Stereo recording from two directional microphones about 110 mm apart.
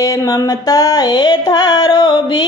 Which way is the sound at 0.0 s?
30° left (ahead or behind).